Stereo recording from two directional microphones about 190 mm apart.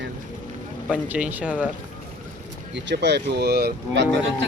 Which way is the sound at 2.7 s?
65° right (ahead or behind).